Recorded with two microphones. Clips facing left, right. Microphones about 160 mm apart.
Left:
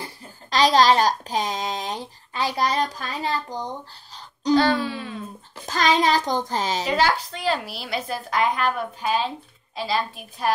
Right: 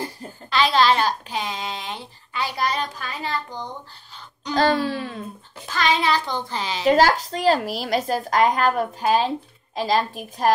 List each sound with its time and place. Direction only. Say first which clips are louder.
0.5 s a child's voice: left 2 dB; 40° left (ahead or behind)
4.6 s a woman's voice: right 3 dB; 40° right (ahead or behind)
5.7 s a child's voice: left 1 dB; 40° left (ahead or behind)
6.9 s a woman's voice: right 8 dB; 40° right (ahead or behind)